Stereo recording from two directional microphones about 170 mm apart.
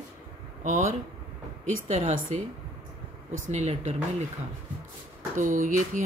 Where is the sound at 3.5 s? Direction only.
40° right (ahead or behind).